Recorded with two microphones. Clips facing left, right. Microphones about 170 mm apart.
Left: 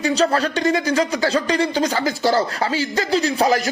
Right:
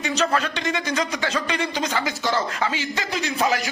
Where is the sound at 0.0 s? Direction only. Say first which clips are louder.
Left 5 dB; 30° left (ahead or behind).